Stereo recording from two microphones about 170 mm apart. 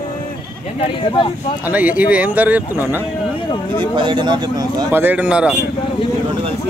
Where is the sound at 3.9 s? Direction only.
30° right (ahead or behind).